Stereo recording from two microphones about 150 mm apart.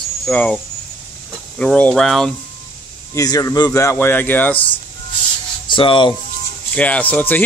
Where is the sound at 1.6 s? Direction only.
5° left (ahead or behind).